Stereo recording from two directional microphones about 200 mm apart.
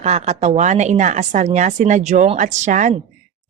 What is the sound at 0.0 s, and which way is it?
Speech, 35° right (ahead or behind).